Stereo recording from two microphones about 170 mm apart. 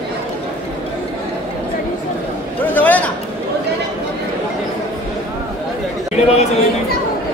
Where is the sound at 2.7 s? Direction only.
10° left (ahead or behind).